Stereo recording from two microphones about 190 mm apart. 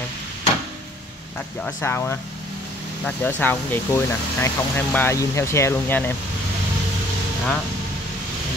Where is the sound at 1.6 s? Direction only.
10° left (ahead or behind).